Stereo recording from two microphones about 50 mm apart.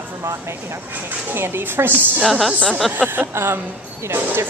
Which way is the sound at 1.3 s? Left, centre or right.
Right.